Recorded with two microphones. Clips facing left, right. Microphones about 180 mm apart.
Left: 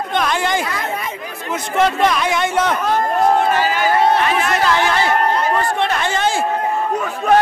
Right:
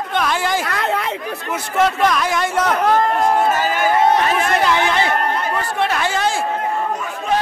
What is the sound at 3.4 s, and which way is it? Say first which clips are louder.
Crowd: left 1 dB; 45° right (ahead or behind).